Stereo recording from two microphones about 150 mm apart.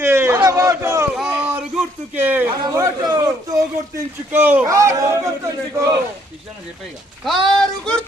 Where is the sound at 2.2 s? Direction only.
10° right (ahead or behind).